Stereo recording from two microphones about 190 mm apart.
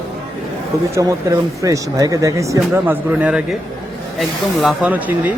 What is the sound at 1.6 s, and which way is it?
Speech, 15° right (ahead or behind).